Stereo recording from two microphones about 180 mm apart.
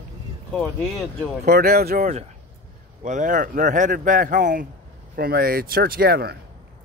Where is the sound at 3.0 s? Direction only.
45° right (ahead or behind).